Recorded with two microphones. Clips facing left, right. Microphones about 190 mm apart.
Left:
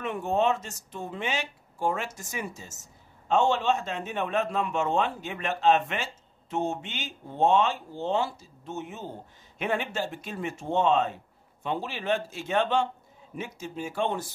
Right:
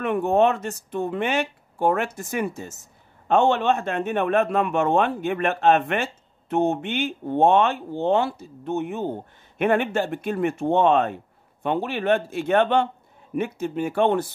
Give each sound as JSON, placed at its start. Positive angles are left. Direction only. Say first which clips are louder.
{"t": 0.0, "sound": "speech", "louder": "right 7 dB", "side_deg": -60}